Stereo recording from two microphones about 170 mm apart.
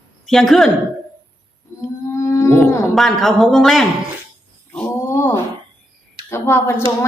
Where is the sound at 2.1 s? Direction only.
15° left (ahead or behind).